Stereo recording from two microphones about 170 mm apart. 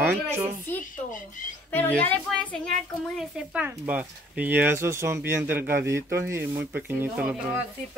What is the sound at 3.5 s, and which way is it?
Speech, 10° right (ahead or behind).